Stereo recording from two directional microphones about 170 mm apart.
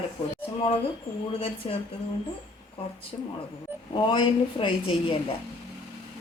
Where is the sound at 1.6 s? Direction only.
35° left (ahead or behind).